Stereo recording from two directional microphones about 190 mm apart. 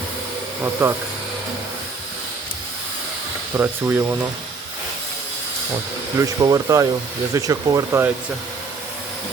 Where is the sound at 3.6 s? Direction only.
10° right (ahead or behind).